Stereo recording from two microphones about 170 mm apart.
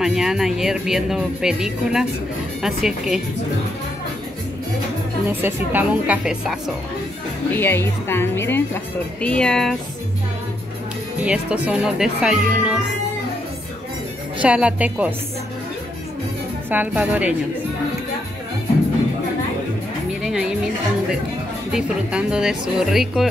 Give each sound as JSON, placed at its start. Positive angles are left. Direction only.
{"t": 0.0, "sound": "speech", "side_deg": -5}
{"t": 5.3, "sound": "a woman's voice", "side_deg": -10}
{"t": 7.5, "sound": "a woman's voice", "side_deg": 15}
{"t": 11.2, "sound": "speech", "side_deg": -5}
{"t": 14.4, "sound": "a woman's voice", "side_deg": -5}
{"t": 16.7, "sound": "a woman's voice", "side_deg": -10}
{"t": 20.2, "sound": "music", "side_deg": -5}
{"t": 21.7, "sound": "speech", "side_deg": -5}